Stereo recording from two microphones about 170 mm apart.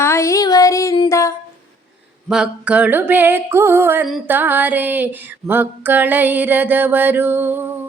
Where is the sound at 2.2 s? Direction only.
5° right (ahead or behind).